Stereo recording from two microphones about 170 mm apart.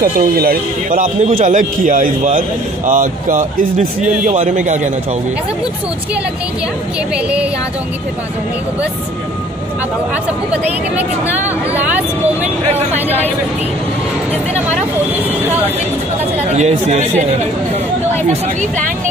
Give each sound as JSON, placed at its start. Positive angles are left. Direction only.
{"t": 0.0, "sound": "speech", "side_deg": -60}
{"t": 11.4, "sound": "speech", "side_deg": -10}
{"t": 15.1, "sound": "speech", "side_deg": -10}
{"t": 16.4, "sound": "speech", "side_deg": -40}
{"t": 18.3, "sound": "speech", "side_deg": -45}